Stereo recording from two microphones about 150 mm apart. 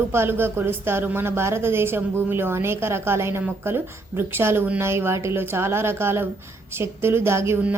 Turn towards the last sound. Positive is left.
turn(degrees=-15)  # may be behind; listen again after turning